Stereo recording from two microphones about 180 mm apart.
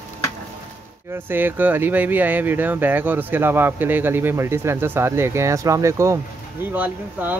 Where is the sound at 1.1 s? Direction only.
10° right (ahead or behind).